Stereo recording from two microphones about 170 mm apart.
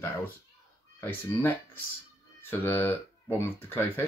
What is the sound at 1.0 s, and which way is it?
Speech, 10° left (ahead or behind).